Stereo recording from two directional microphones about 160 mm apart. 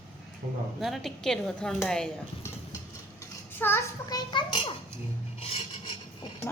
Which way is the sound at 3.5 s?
15° left (ahead or behind).